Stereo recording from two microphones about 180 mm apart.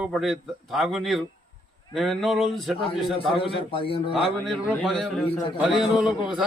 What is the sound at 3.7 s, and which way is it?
Speech, 30° left (ahead or behind).